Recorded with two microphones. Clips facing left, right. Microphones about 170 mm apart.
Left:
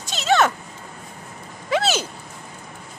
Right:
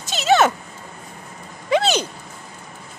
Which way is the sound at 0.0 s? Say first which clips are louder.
Right 3 dB; centre (ahead or behind).